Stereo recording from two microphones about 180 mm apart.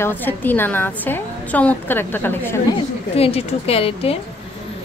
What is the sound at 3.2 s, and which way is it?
A woman's voice, 35° left (ahead or behind).